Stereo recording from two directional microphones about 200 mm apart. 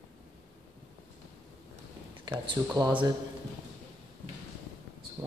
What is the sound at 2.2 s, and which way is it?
Speech, 20° right (ahead or behind).